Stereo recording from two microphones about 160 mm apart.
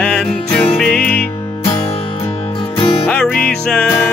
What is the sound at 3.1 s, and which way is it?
Music, 5° left (ahead or behind).